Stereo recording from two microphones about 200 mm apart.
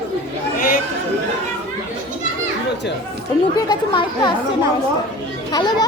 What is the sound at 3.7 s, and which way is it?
Speech, 20° left (ahead or behind).